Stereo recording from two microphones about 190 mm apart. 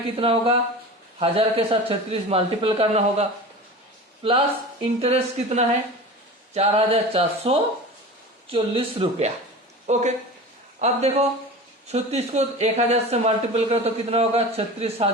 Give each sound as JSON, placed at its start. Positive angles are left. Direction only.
{"t": 0.2, "sound": "a man's voice", "side_deg": -30}